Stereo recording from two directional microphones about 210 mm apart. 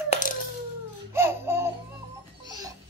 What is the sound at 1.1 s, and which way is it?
Laughter, 10° right (ahead or behind).